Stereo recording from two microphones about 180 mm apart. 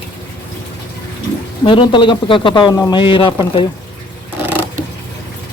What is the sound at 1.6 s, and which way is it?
Speech, 30° left (ahead or behind).